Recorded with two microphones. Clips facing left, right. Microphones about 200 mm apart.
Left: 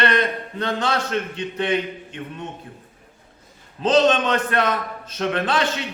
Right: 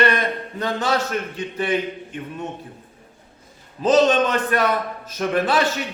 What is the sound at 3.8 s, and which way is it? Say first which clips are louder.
A man's voice: right 1 dB; 10° right (ahead or behind).